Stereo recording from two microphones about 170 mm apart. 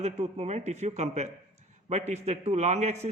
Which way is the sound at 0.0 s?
40° right (ahead or behind).